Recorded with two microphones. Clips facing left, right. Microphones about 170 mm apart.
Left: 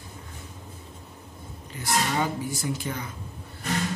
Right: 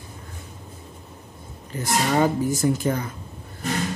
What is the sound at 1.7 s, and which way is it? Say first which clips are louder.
Speech: right 4 dB; 50° right (ahead or behind).